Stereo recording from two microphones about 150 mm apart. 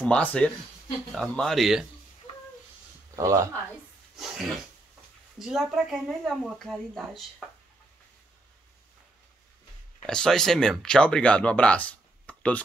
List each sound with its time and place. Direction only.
0.0 s speech: 10° left (ahead or behind)
3.2 s speech: 20° right (ahead or behind)
4.2 s speech: centre (ahead or behind)
10.0 s speech: 5° left (ahead or behind)